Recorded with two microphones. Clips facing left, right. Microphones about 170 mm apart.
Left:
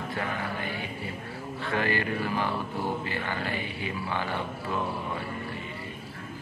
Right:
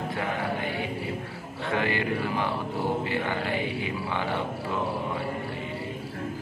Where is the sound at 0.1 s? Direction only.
20° right (ahead or behind).